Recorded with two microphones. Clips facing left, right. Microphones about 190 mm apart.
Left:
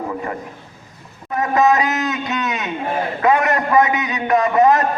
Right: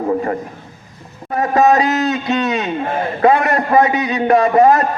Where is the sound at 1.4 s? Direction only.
35° right (ahead or behind).